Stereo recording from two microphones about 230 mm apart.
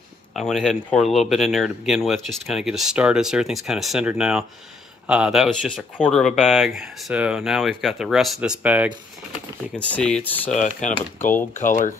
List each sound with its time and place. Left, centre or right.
0.3 s speech: centre
9.8 s speech: centre
10.5 s speech: left